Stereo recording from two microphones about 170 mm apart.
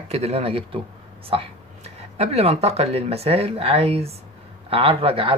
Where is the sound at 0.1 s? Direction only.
40° right (ahead or behind).